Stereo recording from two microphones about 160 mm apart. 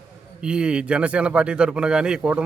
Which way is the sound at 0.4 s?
5° right (ahead or behind).